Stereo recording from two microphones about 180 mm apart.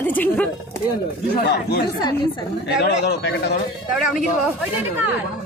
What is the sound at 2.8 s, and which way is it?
Speech, 65° left (ahead or behind).